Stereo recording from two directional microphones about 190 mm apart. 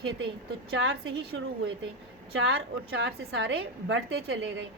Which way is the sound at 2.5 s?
65° right (ahead or behind).